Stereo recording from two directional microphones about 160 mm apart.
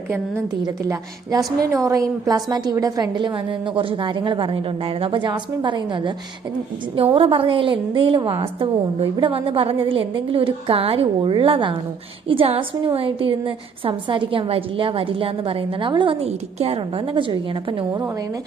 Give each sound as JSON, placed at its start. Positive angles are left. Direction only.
{"t": 0.6, "sound": "a woman's voice", "side_deg": -20}